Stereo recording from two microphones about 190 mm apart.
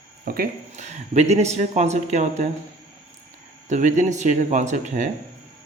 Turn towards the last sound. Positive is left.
turn(degrees=-40)  # may be behind; listen again after turning